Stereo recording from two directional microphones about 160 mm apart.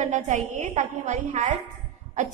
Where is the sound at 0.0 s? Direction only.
50° right (ahead or behind).